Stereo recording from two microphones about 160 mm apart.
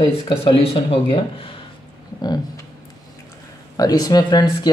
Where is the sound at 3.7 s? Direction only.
25° left (ahead or behind).